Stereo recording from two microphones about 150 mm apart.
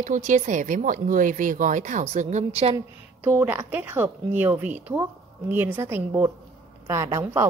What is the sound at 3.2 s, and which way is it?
Speech, 15° right (ahead or behind).